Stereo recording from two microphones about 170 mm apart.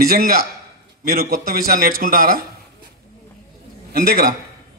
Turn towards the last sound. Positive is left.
turn(degrees=-60)  # may be behind; listen again after turning